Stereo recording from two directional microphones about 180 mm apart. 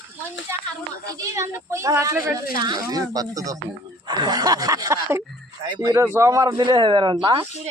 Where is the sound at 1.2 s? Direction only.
15° right (ahead or behind).